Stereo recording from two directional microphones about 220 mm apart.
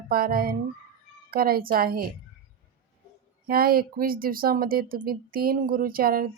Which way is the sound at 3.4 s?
45° right (ahead or behind).